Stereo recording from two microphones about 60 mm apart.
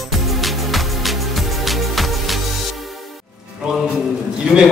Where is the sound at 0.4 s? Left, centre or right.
Centre.